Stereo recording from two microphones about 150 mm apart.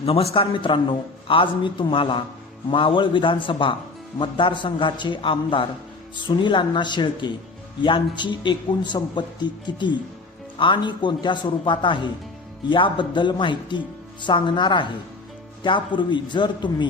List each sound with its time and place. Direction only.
0.0 s a man's voice: 40° left (ahead or behind)